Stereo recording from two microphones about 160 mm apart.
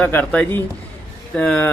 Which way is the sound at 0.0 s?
10° left (ahead or behind).